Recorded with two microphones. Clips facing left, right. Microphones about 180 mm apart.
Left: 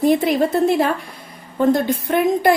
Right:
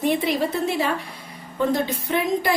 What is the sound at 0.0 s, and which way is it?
A woman's voice, 45° left (ahead or behind).